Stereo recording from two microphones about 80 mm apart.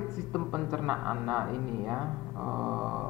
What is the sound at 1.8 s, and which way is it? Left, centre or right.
Speech, centre.